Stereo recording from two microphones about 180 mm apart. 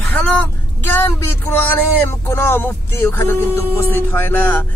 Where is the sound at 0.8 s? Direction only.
10° left (ahead or behind).